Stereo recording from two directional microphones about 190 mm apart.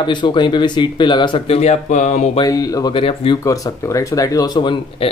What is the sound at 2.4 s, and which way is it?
Speech, 20° left (ahead or behind).